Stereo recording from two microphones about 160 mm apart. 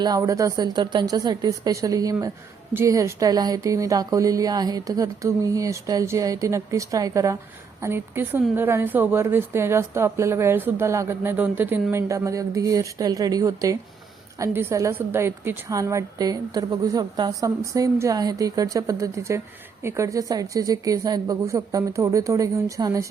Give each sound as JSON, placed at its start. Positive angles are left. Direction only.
{"t": 0.0, "sound": "a woman's voice", "side_deg": -20}